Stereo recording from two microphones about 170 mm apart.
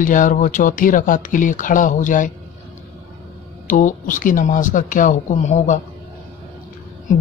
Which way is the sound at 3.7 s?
50° left (ahead or behind).